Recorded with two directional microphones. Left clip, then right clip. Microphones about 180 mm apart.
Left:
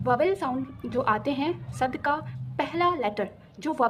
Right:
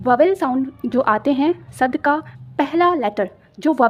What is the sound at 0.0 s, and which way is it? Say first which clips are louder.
A woman's voice: right 9 dB; 35° right (ahead or behind).